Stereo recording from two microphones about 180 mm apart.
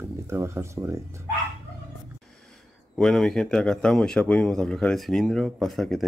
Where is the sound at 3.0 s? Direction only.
5° left (ahead or behind).